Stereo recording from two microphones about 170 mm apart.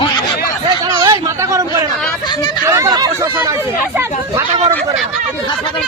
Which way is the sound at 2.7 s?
20° right (ahead or behind).